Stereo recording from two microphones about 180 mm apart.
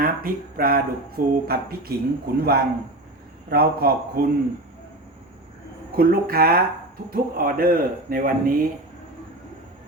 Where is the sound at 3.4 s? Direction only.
60° right (ahead or behind).